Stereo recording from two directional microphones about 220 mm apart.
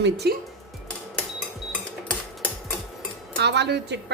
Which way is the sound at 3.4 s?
50° right (ahead or behind).